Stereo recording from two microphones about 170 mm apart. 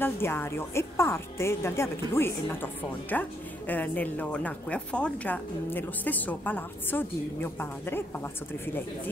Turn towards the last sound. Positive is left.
turn(degrees=10)  # may be behind; listen again after turning